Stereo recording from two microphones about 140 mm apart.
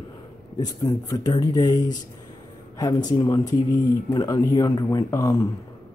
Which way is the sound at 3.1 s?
25° left (ahead or behind).